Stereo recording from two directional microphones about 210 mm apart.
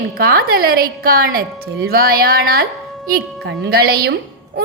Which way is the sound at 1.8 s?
45° right (ahead or behind).